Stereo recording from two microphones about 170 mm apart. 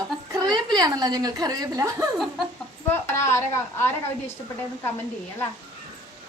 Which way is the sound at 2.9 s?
15° left (ahead or behind).